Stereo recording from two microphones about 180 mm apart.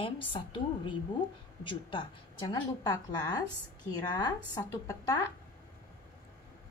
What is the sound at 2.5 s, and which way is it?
A woman's voice, 20° left (ahead or behind).